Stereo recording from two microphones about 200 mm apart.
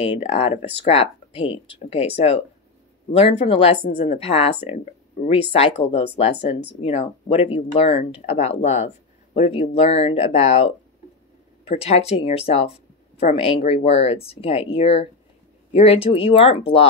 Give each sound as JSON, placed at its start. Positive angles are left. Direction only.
{"t": 0.0, "sound": "speech", "side_deg": 30}